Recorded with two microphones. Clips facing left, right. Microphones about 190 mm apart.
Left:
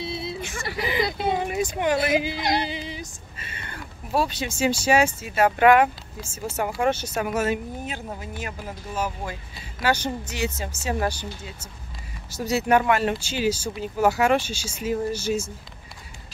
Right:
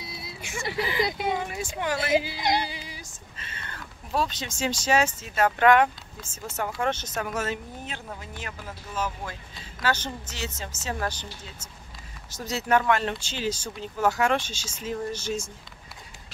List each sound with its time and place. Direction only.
0.0 s a sound: 25° left (ahead or behind)
0.4 s a sound: 15° right (ahead or behind)
0.7 s speech: 20° left (ahead or behind)
1.0 s speech: 15° right (ahead or behind)
1.3 s speech: 20° left (ahead or behind)
2.6 s music: 20° left (ahead or behind)
3.3 s speech: 10° left (ahead or behind)